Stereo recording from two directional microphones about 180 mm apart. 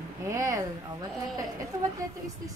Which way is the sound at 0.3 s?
20° right (ahead or behind).